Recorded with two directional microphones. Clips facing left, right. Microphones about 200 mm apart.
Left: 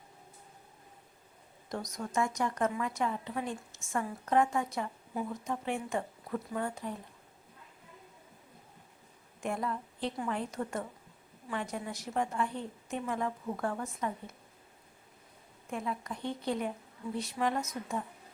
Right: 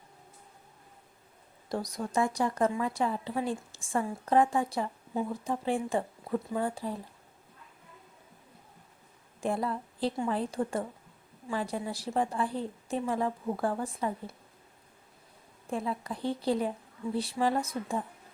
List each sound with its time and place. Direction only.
1.7 s speech: 35° right (ahead or behind)
9.4 s speech: 35° right (ahead or behind)
15.7 s speech: 30° right (ahead or behind)